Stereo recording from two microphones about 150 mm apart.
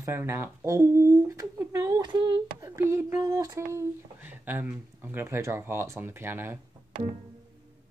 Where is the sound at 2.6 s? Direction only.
20° right (ahead or behind).